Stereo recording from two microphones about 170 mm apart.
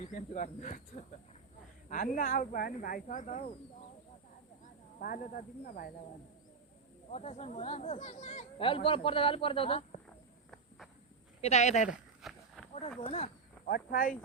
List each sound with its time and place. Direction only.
0.0 s speech: 50° left (ahead or behind)
4.9 s speech: 55° left (ahead or behind)
7.1 s speech: 40° left (ahead or behind)
10.1 s cricket: 5° left (ahead or behind)
11.3 s speech: 40° left (ahead or behind)
12.2 s a sound: centre (ahead or behind)
13.0 s speech: 35° left (ahead or behind)
13.7 s speech: 55° left (ahead or behind)